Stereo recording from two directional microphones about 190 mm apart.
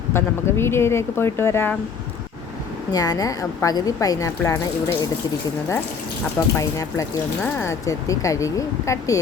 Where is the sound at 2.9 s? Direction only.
20° left (ahead or behind).